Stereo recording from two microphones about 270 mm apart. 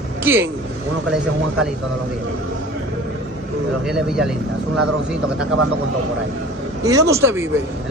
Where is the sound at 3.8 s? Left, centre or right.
Centre.